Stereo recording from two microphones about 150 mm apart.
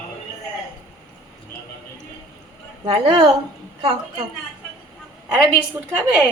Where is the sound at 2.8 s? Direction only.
30° right (ahead or behind).